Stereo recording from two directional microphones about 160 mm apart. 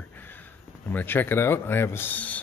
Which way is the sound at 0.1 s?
10° left (ahead or behind).